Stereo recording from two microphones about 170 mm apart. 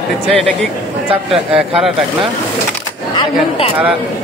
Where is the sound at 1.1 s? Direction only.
35° right (ahead or behind).